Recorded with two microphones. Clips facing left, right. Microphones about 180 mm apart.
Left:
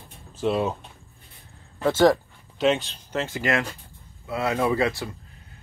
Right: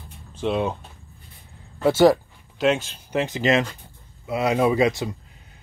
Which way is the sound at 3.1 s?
15° right (ahead or behind).